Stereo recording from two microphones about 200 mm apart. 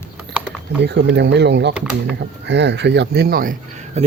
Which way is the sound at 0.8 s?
60° right (ahead or behind).